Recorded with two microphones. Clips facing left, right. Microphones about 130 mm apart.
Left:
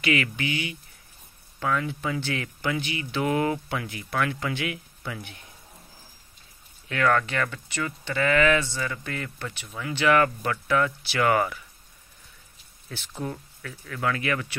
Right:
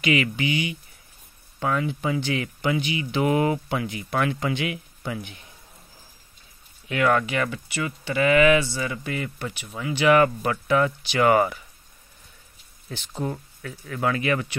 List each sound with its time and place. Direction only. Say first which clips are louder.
0.0 s speech: right 3 dB; 20° right (ahead or behind)
6.9 s speech: right 2 dB; 15° right (ahead or behind)
12.9 s speech: right 4 dB; 20° right (ahead or behind)